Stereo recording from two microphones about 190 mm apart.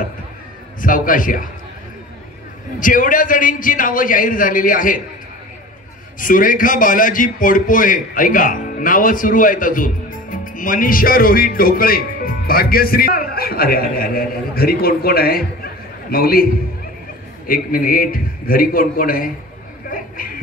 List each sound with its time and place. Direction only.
0.7 s a man's voice: 45° left (ahead or behind)
2.8 s a man's voice: 45° left (ahead or behind)
6.1 s a man's voice: 45° left (ahead or behind)
17.5 s a man's voice: 50° left (ahead or behind)
19.9 s a sound: 50° left (ahead or behind)